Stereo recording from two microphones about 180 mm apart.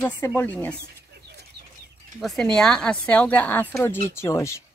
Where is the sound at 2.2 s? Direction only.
5° left (ahead or behind).